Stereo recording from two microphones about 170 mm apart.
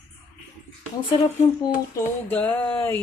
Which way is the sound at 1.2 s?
20° left (ahead or behind).